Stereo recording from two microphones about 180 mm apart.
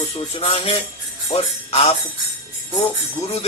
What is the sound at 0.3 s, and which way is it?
Jingle bell, 30° left (ahead or behind).